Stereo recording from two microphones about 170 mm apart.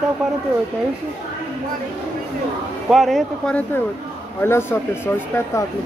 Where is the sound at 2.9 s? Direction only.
Centre (ahead or behind).